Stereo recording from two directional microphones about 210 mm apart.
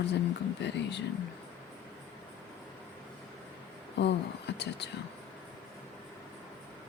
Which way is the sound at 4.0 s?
55° left (ahead or behind).